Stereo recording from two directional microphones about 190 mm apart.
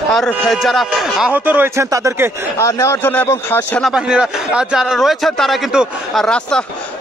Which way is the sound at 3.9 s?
5° right (ahead or behind).